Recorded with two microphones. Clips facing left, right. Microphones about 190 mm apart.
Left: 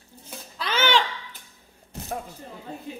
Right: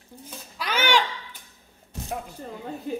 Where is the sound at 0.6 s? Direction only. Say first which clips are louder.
Even; 10° right (ahead or behind).